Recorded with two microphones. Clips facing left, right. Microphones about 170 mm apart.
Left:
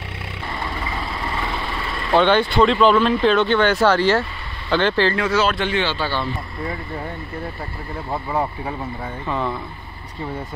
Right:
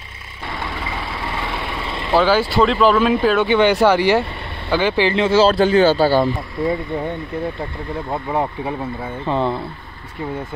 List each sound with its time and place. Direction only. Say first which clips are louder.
2.1 s speech: even; 5° right (ahead or behind)
5.2 s speech: right 6 dB; 30° right (ahead or behind)
8.1 s speech: right 1 dB; 15° right (ahead or behind)
9.2 s speech: right 5 dB; 30° right (ahead or behind)